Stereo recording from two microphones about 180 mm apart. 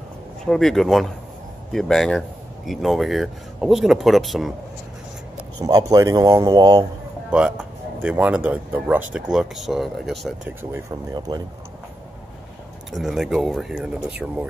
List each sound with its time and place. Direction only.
0.5 s speech: centre (ahead or behind)
5.6 s a man's voice: 20° right (ahead or behind)
7.2 s speech: 5° right (ahead or behind)
10.6 s a man's voice: 20° right (ahead or behind)
12.9 s speech: centre (ahead or behind)